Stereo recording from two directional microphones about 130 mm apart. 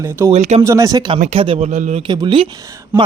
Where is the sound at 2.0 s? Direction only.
35° right (ahead or behind).